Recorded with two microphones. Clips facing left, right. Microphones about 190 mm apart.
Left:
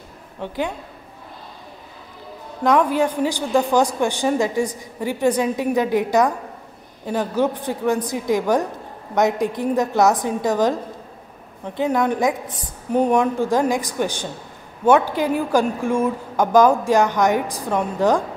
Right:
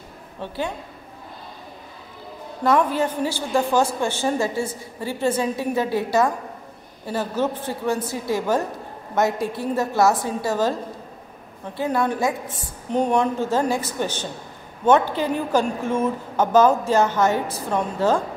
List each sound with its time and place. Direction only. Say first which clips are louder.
0.4 s a woman's voice: left 3 dB; 15° left (ahead or behind)
2.6 s a woman's voice: left 2 dB; 15° left (ahead or behind)